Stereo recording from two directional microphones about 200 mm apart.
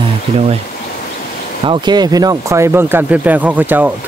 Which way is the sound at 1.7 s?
20° right (ahead or behind).